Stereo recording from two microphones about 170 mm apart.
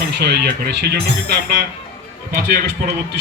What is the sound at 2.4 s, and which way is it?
Speech, 70° right (ahead or behind).